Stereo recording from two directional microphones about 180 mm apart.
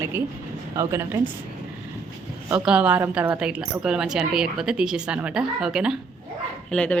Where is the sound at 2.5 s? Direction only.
5° right (ahead or behind).